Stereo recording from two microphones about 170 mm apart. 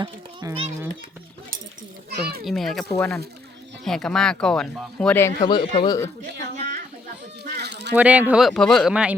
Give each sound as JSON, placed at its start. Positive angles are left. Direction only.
{"t": 0.0, "sound": "a child's voice", "side_deg": -25}
{"t": 2.0, "sound": "a child's voice", "side_deg": -65}
{"t": 2.4, "sound": "speech", "side_deg": 0}
{"t": 5.5, "sound": "speech", "side_deg": 30}
{"t": 7.5, "sound": "a sound", "side_deg": -80}
{"t": 7.9, "sound": "speech", "side_deg": -10}